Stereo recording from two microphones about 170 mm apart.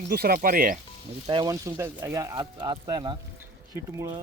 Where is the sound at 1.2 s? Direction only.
20° right (ahead or behind).